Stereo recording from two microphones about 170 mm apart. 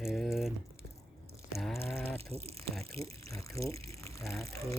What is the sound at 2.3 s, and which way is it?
Speech, 35° right (ahead or behind).